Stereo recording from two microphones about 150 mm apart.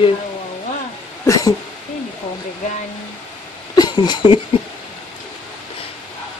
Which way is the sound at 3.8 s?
30° left (ahead or behind).